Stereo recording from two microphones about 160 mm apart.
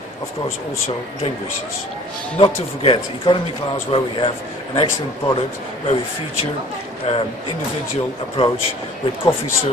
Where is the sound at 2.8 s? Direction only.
35° left (ahead or behind).